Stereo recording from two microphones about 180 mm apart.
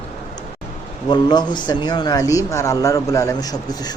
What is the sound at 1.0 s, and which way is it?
Speech, 25° left (ahead or behind).